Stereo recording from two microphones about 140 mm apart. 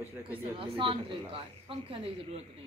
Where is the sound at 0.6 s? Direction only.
40° right (ahead or behind).